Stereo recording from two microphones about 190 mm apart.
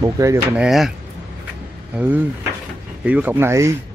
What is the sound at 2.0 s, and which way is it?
Speech, 10° right (ahead or behind).